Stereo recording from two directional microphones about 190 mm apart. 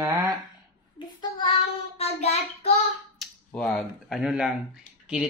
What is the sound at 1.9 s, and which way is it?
Child singing, 35° left (ahead or behind).